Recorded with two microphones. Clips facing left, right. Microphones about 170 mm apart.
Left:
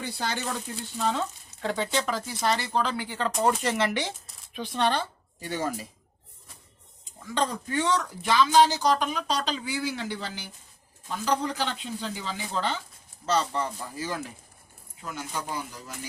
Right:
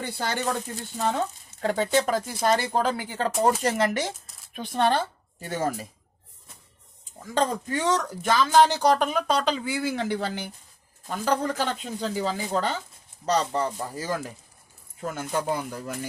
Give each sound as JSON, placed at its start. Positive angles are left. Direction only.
{"t": 0.0, "sound": "speech", "side_deg": -55}
{"t": 7.3, "sound": "speech", "side_deg": -40}